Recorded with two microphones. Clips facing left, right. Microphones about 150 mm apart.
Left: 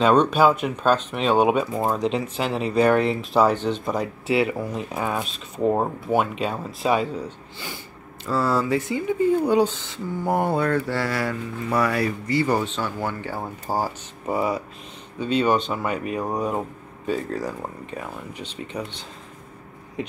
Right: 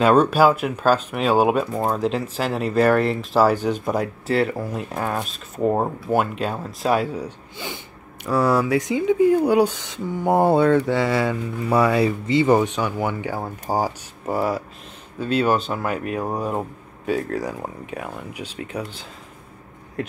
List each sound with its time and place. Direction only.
0.0 s speech: 5° right (ahead or behind)
4.3 s speech: 5° left (ahead or behind); by 10.3 s 15° right (ahead or behind)
10.3 s mantra: 30° right (ahead or behind); by 14.3 s 15° right (ahead or behind)
14.3 s speech: centre (ahead or behind)